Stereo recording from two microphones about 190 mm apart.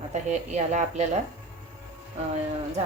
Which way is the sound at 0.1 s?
35° right (ahead or behind).